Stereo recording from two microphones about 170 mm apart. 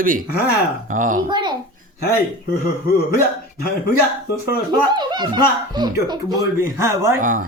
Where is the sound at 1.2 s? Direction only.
25° right (ahead or behind).